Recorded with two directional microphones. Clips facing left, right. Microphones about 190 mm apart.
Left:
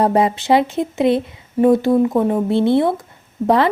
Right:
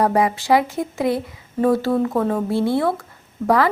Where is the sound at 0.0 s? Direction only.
25° left (ahead or behind).